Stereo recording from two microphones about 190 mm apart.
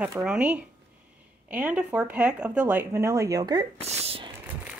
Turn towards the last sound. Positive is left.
turn(degrees=-30)  # may be behind; listen again after turning